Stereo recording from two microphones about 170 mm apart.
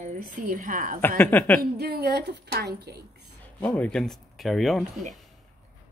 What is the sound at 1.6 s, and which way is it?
A woman's voice, 70° right (ahead or behind).